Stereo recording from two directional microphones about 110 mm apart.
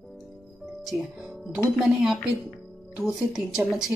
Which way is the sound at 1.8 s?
5° right (ahead or behind).